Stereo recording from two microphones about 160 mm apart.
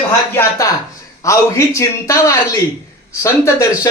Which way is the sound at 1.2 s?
20° left (ahead or behind).